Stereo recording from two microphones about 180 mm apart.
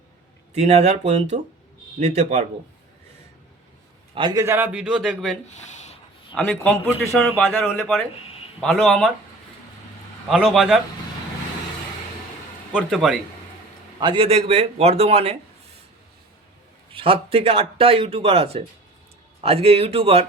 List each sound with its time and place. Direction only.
0.5 s speech: 35° right (ahead or behind)
4.1 s a man's voice: 25° right (ahead or behind); by 5.4 s centre (ahead or behind)
5.7 s a sound: 40° left (ahead or behind)
6.3 s a man's voice: 5° left (ahead or behind)
7.6 s a man's voice: centre (ahead or behind)
10.2 s a man's voice: centre (ahead or behind)
12.7 s a man's voice: centre (ahead or behind)
14.0 s speech: 30° right (ahead or behind)
16.9 s speech: 30° right (ahead or behind)